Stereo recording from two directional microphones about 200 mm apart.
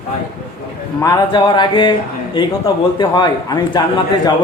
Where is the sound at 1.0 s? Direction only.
20° left (ahead or behind).